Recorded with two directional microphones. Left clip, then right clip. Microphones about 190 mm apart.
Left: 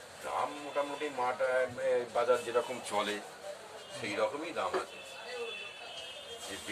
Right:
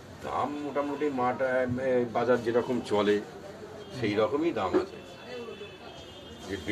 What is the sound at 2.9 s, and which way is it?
Speech, 30° left (ahead or behind).